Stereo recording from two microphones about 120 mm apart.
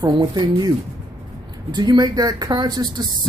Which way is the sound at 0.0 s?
35° right (ahead or behind).